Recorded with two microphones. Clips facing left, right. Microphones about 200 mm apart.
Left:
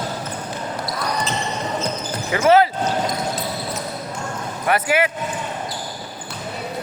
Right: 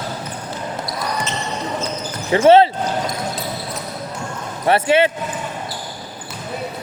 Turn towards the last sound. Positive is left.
turn(degrees=-30)  # may be behind; listen again after turning